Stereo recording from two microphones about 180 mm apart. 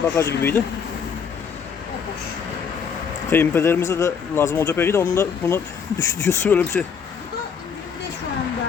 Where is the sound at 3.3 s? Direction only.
15° left (ahead or behind).